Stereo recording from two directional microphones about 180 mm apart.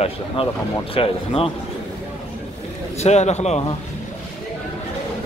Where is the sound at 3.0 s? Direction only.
40° left (ahead or behind).